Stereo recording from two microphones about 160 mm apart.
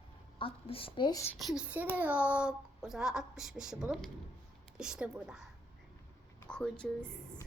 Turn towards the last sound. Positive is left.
turn(degrees=5)  # may be behind; listen again after turning